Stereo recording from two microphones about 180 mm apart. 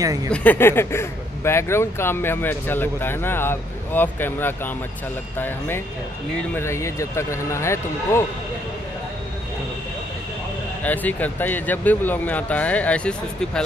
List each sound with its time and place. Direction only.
0.0 s speech: 20° right (ahead or behind)
0.3 s speech: 10° left (ahead or behind)
6.5 s speech: 15° left (ahead or behind)
10.8 s speech: 10° left (ahead or behind)